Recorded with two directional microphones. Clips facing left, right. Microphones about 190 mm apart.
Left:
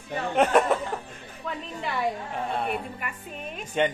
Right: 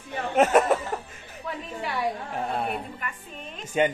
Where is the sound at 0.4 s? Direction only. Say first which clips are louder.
Right 1 dB; 5° right (ahead or behind).